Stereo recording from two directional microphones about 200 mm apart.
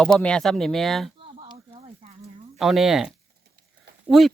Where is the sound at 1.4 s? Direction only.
30° right (ahead or behind).